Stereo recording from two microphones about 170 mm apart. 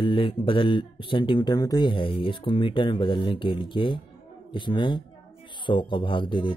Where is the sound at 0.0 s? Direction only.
30° left (ahead or behind).